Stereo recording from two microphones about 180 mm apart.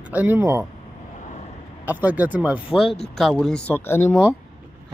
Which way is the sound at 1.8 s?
10° right (ahead or behind).